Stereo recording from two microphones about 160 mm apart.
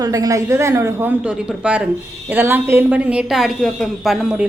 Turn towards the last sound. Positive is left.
turn(degrees=0)  # may be behind; listen again after turning